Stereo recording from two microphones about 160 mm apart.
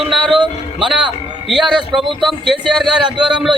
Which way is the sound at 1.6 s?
30° right (ahead or behind).